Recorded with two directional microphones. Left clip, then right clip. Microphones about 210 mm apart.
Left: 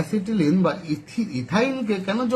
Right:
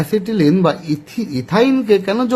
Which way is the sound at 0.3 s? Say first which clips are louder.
Right 6 dB; 45° right (ahead or behind).